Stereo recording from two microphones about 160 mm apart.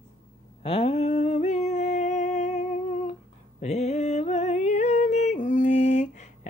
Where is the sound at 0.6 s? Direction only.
35° left (ahead or behind).